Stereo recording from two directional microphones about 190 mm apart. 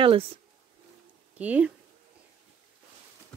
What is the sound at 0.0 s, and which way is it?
Speech, 30° right (ahead or behind).